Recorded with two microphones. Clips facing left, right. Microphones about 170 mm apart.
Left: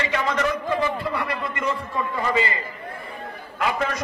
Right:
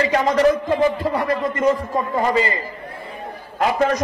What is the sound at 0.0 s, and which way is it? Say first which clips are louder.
Speech: right 7 dB; 40° right (ahead or behind).